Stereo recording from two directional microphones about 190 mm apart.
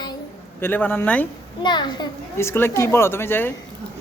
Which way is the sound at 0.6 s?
10° left (ahead or behind).